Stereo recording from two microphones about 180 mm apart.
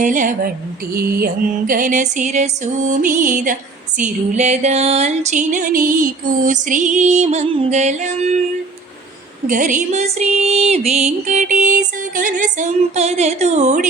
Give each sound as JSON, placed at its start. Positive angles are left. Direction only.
{"t": 0.0, "sound": "music", "side_deg": -45}
{"t": 0.9, "sound": "music", "side_deg": -55}
{"t": 9.5, "sound": "music", "side_deg": -45}